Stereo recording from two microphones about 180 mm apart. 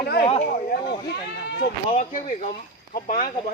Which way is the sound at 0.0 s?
65° left (ahead or behind).